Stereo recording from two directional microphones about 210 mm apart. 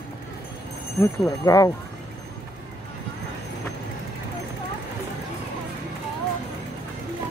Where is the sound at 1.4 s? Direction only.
15° left (ahead or behind).